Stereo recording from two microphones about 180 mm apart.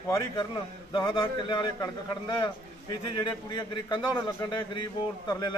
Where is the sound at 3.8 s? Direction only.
25° left (ahead or behind).